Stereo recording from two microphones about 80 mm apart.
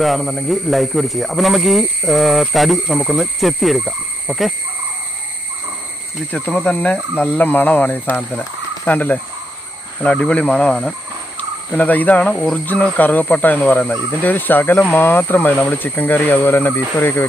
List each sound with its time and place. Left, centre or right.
0.0 s speech: centre
6.5 s speech: centre